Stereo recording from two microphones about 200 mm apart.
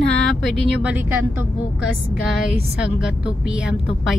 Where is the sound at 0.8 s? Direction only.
5° right (ahead or behind).